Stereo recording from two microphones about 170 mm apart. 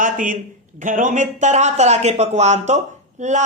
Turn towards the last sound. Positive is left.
turn(degrees=-45)  # may be behind; listen again after turning